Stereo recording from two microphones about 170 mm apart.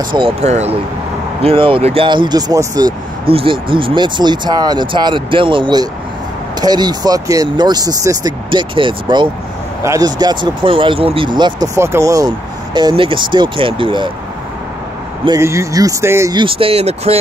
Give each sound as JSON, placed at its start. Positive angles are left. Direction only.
{"t": 0.1, "sound": "speech", "side_deg": -30}
{"t": 0.5, "sound": "speech", "side_deg": -40}
{"t": 12.7, "sound": "speech", "side_deg": -30}
{"t": 15.2, "sound": "speech", "side_deg": -20}
{"t": 16.3, "sound": "speech", "side_deg": -30}